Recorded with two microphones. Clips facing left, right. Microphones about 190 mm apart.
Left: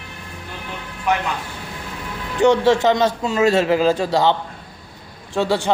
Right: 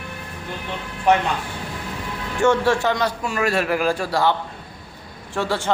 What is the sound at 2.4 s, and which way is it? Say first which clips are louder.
A man's voice: left 4 dB; 20° left (ahead or behind).